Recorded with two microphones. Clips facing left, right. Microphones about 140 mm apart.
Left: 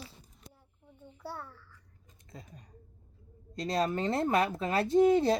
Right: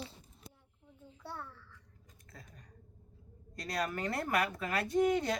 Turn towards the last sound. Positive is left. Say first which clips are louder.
# left 6 dB
turn(degrees=30)  # may be behind; listen again after turning